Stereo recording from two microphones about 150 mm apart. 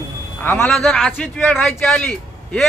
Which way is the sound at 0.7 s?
Centre (ahead or behind).